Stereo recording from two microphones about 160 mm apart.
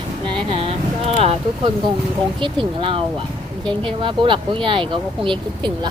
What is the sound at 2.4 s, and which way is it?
Speech, 30° right (ahead or behind).